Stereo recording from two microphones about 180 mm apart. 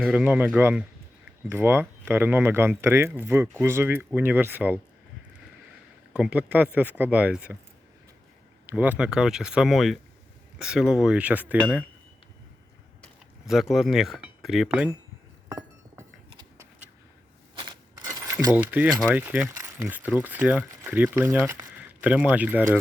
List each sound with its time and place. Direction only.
0.0 s speech: 5° right (ahead or behind)
6.1 s speech: 5° right (ahead or behind)
8.6 s speech: 10° right (ahead or behind)
13.5 s speech: centre (ahead or behind)
15.4 s a sound: 20° right (ahead or behind)
17.5 s a sound: 25° right (ahead or behind)
18.5 s speech: 10° right (ahead or behind)